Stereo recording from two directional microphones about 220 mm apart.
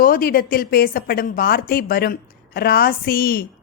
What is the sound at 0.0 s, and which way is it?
A woman's voice, 40° left (ahead or behind).